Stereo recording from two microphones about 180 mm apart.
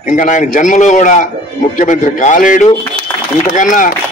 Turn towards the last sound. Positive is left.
turn(degrees=45)  # may be behind; listen again after turning